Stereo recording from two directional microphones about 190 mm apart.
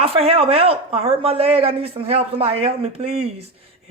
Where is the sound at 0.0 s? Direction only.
30° right (ahead or behind).